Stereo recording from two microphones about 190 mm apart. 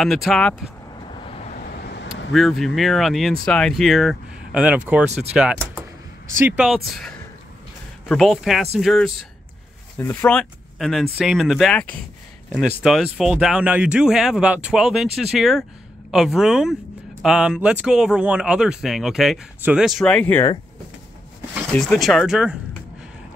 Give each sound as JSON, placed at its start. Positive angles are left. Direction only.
{"t": 0.0, "sound": "speech", "side_deg": 0}
{"t": 1.2, "sound": "vehicle", "side_deg": 35}
{"t": 1.6, "sound": "vehicle", "side_deg": 60}
{"t": 2.3, "sound": "speech", "side_deg": 0}
{"t": 21.7, "sound": "speech", "side_deg": 0}